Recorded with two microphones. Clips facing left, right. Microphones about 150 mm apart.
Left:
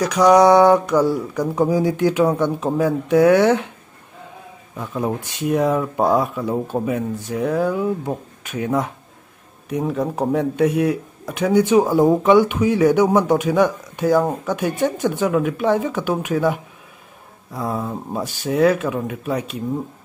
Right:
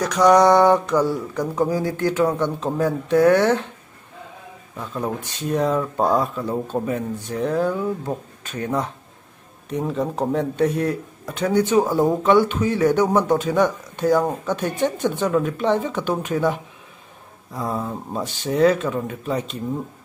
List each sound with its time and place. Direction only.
0.0 s speech: 5° left (ahead or behind)
4.7 s speech: 10° left (ahead or behind)